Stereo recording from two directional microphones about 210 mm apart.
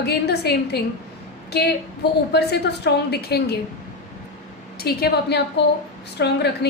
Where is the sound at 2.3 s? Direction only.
50° left (ahead or behind).